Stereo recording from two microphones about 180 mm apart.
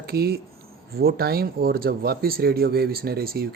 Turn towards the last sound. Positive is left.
turn(degrees=-55)  # may be behind; listen again after turning